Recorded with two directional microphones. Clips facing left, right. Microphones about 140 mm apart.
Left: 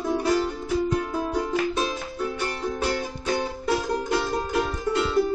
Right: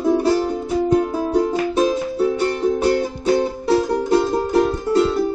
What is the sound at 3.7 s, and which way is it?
Music, 35° right (ahead or behind).